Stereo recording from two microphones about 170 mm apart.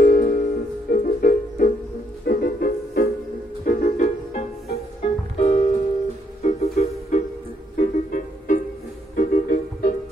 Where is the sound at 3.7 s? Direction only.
50° left (ahead or behind).